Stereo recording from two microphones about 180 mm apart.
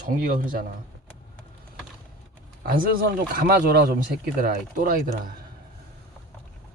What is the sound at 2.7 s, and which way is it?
Speech, 55° right (ahead or behind).